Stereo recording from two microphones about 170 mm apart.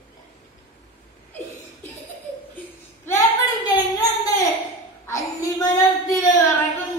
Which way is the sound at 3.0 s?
20° left (ahead or behind).